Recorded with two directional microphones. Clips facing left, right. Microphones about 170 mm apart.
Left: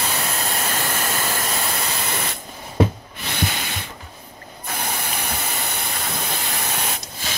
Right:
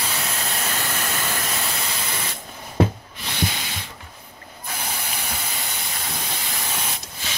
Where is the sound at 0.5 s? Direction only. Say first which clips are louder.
Left 3 dB; 45° left (ahead or behind).